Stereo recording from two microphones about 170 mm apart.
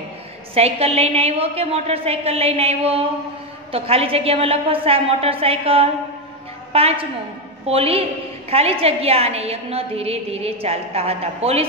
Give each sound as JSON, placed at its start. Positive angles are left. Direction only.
{"t": 0.6, "sound": "a woman's voice", "side_deg": -35}